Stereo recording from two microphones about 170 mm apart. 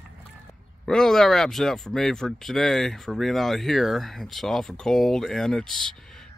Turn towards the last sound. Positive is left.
turn(degrees=0)  # may be behind; listen again after turning